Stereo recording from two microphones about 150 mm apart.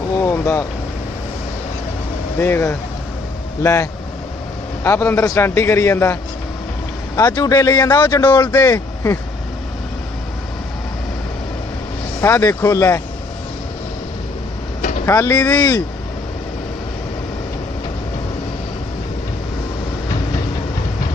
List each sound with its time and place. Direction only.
0.2 s a man's voice: 15° left (ahead or behind)
2.4 s a man's voice: 15° left (ahead or behind)
7.2 s speech: 25° left (ahead or behind)
8.0 s a man's voice: 15° left (ahead or behind)
12.2 s speech: 20° left (ahead or behind)
14.8 s vehicle: 60° left (ahead or behind)
15.0 s speech: 20° left (ahead or behind)